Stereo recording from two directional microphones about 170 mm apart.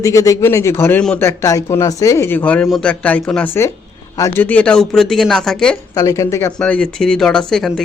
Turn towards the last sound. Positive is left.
turn(degrees=5)  # may be behind; listen again after turning